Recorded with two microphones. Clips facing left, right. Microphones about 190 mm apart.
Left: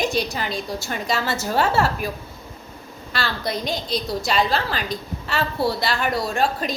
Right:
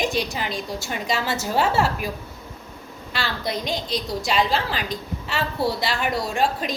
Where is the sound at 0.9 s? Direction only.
15° right (ahead or behind).